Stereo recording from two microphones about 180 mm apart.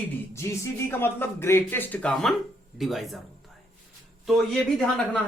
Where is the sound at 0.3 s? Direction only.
15° left (ahead or behind).